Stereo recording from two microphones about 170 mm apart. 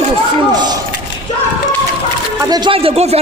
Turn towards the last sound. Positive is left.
turn(degrees=-35)  # may be behind; listen again after turning